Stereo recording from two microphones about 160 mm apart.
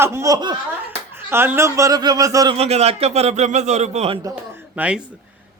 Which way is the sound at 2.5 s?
40° right (ahead or behind).